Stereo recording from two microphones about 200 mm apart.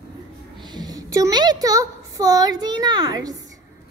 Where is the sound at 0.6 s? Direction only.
20° right (ahead or behind).